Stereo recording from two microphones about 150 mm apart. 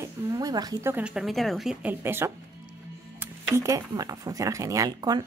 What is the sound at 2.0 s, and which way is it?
Speech, 15° right (ahead or behind).